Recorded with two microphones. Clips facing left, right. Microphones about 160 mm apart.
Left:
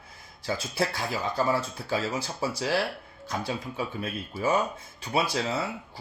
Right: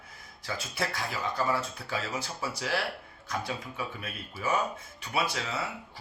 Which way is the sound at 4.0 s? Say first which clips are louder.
Left 8 dB; 30° left (ahead or behind).